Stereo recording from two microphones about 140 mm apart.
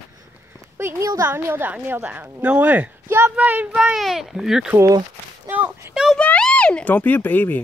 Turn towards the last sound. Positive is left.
turn(degrees=15)  # may be behind; listen again after turning